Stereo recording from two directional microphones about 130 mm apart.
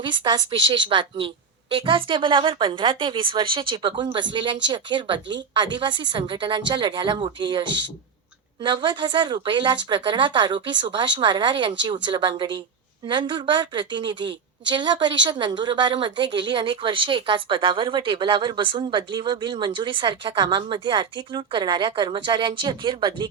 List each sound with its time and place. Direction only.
0.0 s a woman's voice: 35° right (ahead or behind)